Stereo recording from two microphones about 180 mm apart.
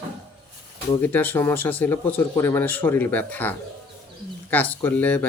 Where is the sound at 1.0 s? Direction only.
10° left (ahead or behind).